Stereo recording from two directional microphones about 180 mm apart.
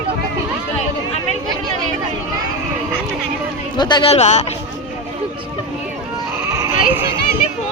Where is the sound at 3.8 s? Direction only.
25° left (ahead or behind).